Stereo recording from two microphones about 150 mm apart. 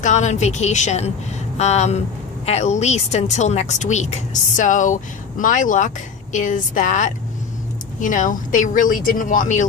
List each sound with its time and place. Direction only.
0.0 s a woman's voice: 50° left (ahead or behind)